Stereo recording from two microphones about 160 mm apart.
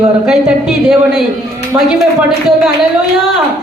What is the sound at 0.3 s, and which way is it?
Speech, centre (ahead or behind).